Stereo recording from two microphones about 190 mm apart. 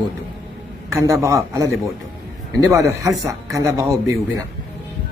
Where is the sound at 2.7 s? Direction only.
15° right (ahead or behind).